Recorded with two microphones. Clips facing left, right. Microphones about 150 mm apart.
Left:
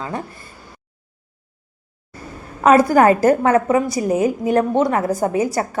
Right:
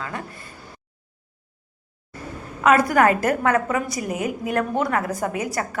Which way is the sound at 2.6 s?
30° left (ahead or behind).